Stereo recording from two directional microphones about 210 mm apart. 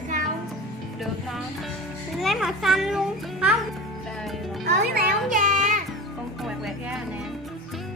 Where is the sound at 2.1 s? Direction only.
Centre (ahead or behind).